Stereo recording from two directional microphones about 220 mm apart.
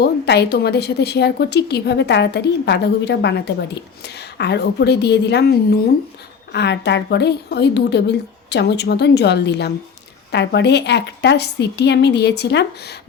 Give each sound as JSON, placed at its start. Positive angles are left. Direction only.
{"t": 0.0, "sound": "a woman's voice", "side_deg": 50}